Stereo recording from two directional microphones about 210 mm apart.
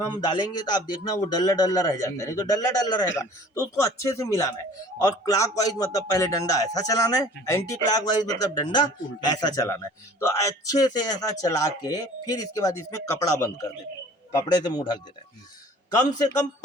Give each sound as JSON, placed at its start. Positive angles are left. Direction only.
{"t": 0.0, "sound": "a man's voice", "side_deg": 20}